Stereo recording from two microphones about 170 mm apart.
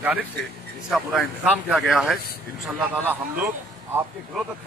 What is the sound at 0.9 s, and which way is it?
A man's voice, centre (ahead or behind).